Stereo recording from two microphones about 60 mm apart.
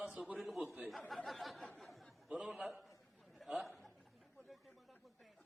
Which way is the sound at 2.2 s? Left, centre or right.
Centre.